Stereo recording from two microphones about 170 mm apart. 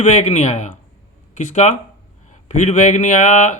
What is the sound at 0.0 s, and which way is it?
Speech, 45° left (ahead or behind).